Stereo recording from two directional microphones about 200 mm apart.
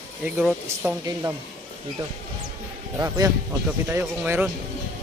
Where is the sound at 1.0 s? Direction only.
15° right (ahead or behind).